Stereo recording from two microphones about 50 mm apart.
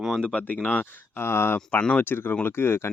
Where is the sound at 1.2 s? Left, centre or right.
Left.